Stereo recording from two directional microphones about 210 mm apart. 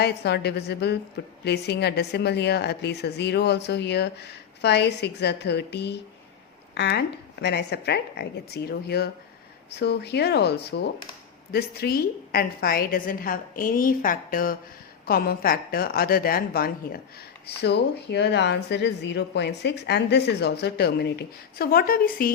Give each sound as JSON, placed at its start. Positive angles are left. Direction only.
{"t": 0.0, "sound": "speech", "side_deg": 50}